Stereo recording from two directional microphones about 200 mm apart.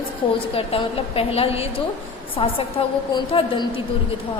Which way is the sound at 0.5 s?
30° left (ahead or behind).